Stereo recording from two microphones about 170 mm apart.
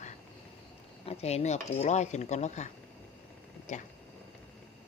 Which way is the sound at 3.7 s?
45° left (ahead or behind).